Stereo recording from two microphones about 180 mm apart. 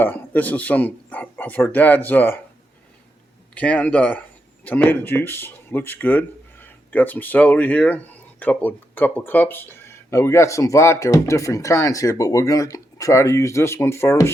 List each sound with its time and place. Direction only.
0.0 s speech: 10° left (ahead or behind)
3.5 s speech: 10° left (ahead or behind)